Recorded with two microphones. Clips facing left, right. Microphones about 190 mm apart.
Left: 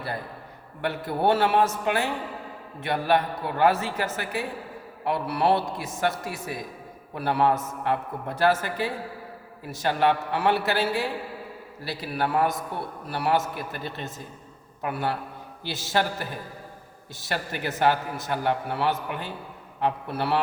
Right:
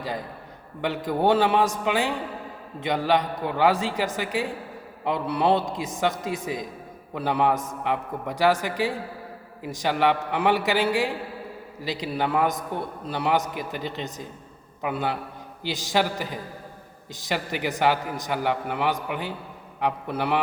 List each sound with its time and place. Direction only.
1.2 s a man's voice: 15° right (ahead or behind)